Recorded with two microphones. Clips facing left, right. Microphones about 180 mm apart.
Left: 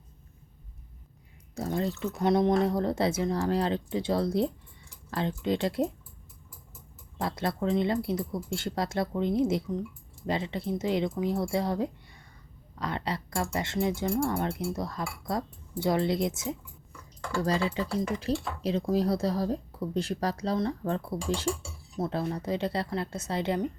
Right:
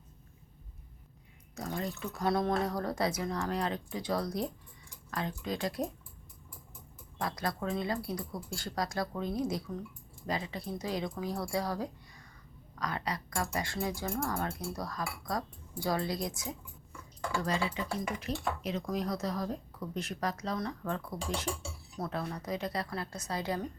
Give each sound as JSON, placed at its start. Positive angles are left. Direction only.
{"t": 1.5, "sound": "speech", "side_deg": 30}
{"t": 7.2, "sound": "speech", "side_deg": 25}